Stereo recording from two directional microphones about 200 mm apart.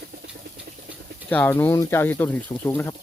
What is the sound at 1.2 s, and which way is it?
Speech, 10° left (ahead or behind).